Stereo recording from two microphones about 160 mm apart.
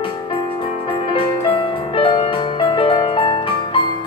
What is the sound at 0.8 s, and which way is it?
Music, 35° left (ahead or behind).